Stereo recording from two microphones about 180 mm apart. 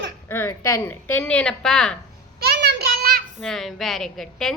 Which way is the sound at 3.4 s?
Centre (ahead or behind).